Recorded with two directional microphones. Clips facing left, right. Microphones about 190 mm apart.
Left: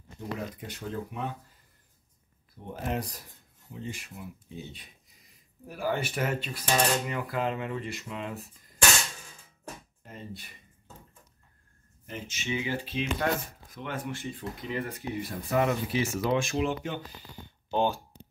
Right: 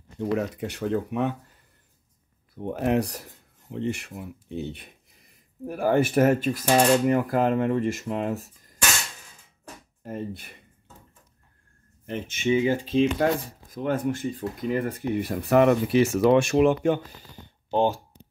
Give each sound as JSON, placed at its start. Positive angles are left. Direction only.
{"t": 0.6, "sound": "speech", "side_deg": -75}
{"t": 2.5, "sound": "speech", "side_deg": -65}
{"t": 10.0, "sound": "speech", "side_deg": -55}
{"t": 12.1, "sound": "speech", "side_deg": -55}
{"t": 12.9, "sound": "speech", "side_deg": -35}
{"t": 17.6, "sound": "speech", "side_deg": -30}